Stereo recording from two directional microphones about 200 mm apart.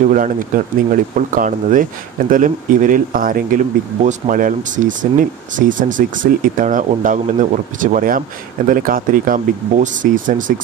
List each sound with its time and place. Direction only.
0.1 s speech: 40° right (ahead or behind)